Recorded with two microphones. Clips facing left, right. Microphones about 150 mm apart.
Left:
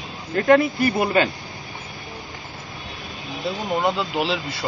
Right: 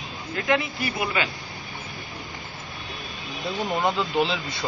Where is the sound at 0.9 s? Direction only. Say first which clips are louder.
Left 5 dB; 35° left (ahead or behind).